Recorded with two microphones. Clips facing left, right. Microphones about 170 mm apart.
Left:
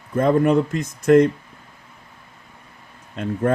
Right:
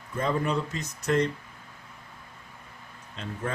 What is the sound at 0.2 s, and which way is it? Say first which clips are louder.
Speech: left 11 dB; 55° left (ahead or behind).